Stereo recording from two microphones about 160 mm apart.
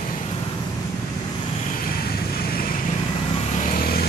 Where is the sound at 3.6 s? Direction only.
65° left (ahead or behind).